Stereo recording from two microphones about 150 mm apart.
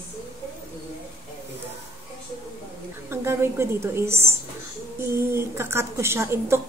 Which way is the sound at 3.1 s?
15° right (ahead or behind).